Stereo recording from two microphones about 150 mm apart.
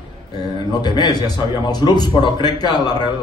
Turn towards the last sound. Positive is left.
turn(degrees=25)  # may be behind; listen again after turning